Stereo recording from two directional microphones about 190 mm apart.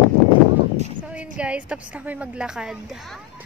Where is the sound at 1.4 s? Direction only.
5° right (ahead or behind).